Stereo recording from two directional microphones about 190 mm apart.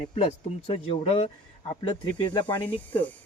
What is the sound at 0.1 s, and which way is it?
Speech, 35° left (ahead or behind).